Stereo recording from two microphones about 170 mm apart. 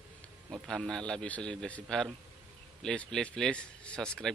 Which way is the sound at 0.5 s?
Centre (ahead or behind).